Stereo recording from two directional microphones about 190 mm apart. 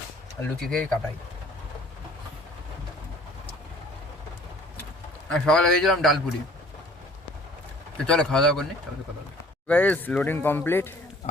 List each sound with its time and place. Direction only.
0.6 s a man's voice: 5° left (ahead or behind)
5.3 s a man's voice: 5° left (ahead or behind)
7.9 s a man's voice: 5° left (ahead or behind)
9.6 s speech: 10° left (ahead or behind)